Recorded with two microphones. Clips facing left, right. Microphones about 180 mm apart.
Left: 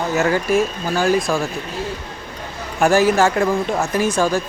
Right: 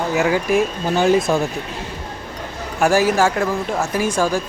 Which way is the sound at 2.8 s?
10° right (ahead or behind).